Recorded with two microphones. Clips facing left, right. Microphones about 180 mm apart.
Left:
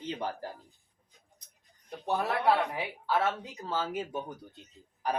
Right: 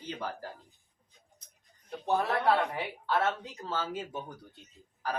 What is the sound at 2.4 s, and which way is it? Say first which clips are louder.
Speech: even; 10° left (ahead or behind).